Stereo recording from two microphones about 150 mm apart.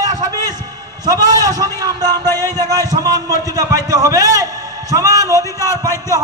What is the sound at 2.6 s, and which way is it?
A man's voice, 25° right (ahead or behind).